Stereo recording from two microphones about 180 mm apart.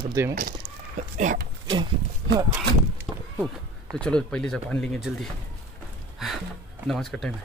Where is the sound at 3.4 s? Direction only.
5° left (ahead or behind).